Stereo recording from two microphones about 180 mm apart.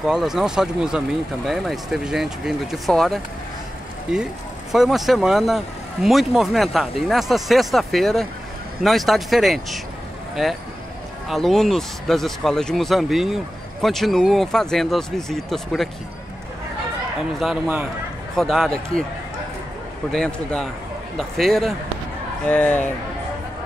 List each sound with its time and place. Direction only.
0.0 s speech: centre (ahead or behind)
18.3 s speech: centre (ahead or behind)
20.1 s speech: 5° left (ahead or behind)